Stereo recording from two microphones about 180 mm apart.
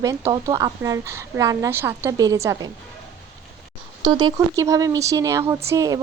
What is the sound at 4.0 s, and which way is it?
Speech, 25° right (ahead or behind).